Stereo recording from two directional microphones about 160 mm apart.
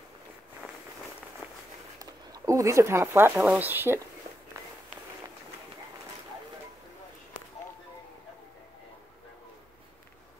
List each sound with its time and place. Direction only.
2.0 s speech: 20° right (ahead or behind)